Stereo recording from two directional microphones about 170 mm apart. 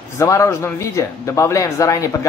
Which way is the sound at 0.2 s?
15° left (ahead or behind).